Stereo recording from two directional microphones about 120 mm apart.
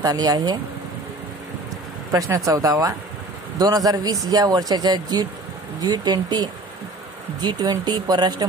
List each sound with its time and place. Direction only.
0.0 s speech: 35° right (ahead or behind)
2.1 s speech: 25° right (ahead or behind)